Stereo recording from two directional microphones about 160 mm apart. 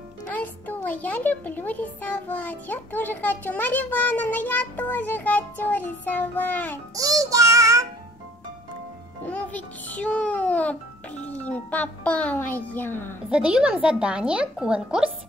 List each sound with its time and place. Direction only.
0.3 s a child's voice: 10° left (ahead or behind)
7.0 s child singing: 20° right (ahead or behind)
9.2 s a child's voice: 10° left (ahead or behind)
13.3 s a woman's voice: 5° right (ahead or behind)